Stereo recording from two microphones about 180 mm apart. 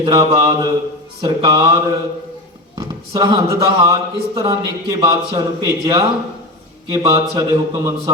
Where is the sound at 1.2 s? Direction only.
25° right (ahead or behind).